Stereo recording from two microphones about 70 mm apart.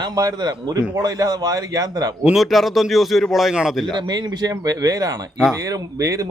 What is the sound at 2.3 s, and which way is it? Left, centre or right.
A man's voice, centre.